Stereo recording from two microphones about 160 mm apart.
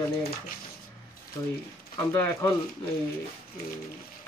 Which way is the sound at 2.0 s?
20° left (ahead or behind).